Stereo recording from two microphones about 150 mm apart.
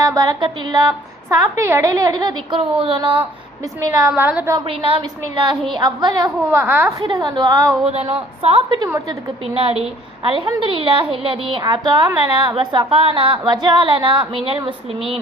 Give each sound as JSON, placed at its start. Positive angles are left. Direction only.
{"t": 0.0, "sound": "a woman's voice", "side_deg": -25}
{"t": 2.6, "sound": "a woman's voice", "side_deg": -40}
{"t": 3.8, "sound": "a woman's voice", "side_deg": -20}
{"t": 4.1, "sound": "a woman's voice", "side_deg": -10}
{"t": 4.6, "sound": "a woman's voice", "side_deg": -35}
{"t": 6.5, "sound": "a woman's voice", "side_deg": -15}
{"t": 7.0, "sound": "a woman's voice", "side_deg": -30}
{"t": 7.9, "sound": "a woman's voice", "side_deg": -40}